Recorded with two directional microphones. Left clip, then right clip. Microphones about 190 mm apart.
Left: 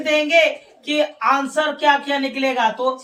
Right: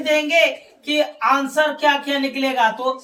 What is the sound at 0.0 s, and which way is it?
A woman's voice, 15° left (ahead or behind).